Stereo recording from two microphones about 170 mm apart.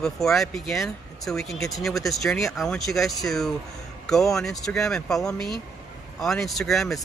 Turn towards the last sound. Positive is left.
turn(degrees=0)  # may be behind; listen again after turning